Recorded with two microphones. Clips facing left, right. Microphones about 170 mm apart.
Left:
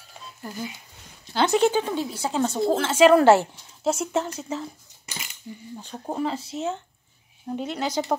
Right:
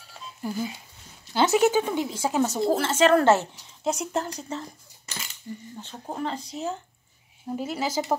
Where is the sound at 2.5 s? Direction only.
Centre (ahead or behind).